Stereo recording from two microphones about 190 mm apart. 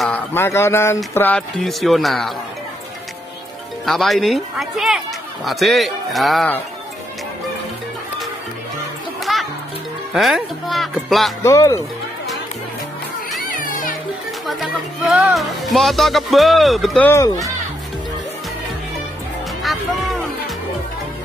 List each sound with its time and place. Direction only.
0.0 s speech: 10° left (ahead or behind)
3.8 s speech: centre (ahead or behind)
9.2 s music: centre (ahead or behind)
10.1 s speech: centre (ahead or behind)
11.4 s speech: 15° left (ahead or behind)
13.5 s music: 45° left (ahead or behind)
14.4 s speech: centre (ahead or behind)
19.6 s music: centre (ahead or behind)